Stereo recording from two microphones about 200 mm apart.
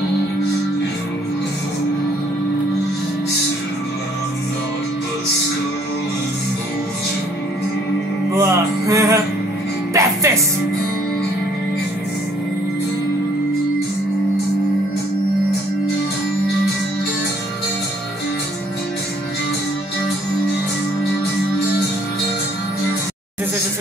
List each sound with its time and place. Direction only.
8.4 s music: 15° right (ahead or behind)